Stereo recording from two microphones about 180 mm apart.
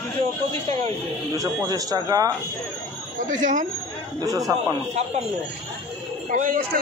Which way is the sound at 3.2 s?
45° right (ahead or behind).